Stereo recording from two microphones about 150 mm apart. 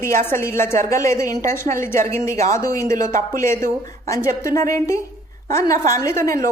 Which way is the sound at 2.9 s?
60° right (ahead or behind).